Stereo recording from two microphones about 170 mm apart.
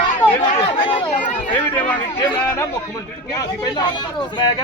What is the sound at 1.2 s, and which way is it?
Speech, 50° left (ahead or behind).